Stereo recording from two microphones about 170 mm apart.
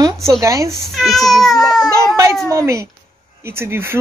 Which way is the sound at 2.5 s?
15° right (ahead or behind).